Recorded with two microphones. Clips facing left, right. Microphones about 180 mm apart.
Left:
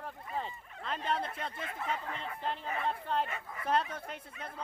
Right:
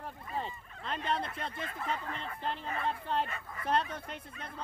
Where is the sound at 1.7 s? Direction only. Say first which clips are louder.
Left 1 dB; 15° left (ahead or behind).